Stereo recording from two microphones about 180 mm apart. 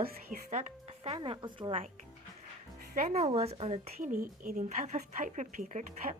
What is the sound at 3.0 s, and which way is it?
Speech, 35° right (ahead or behind).